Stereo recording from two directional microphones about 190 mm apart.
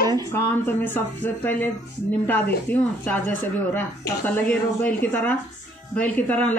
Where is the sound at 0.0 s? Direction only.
20° right (ahead or behind).